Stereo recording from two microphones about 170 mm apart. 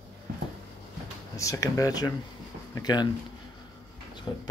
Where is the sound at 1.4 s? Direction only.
20° left (ahead or behind).